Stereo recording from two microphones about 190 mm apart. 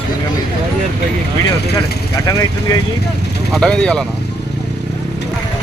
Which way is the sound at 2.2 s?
20° left (ahead or behind).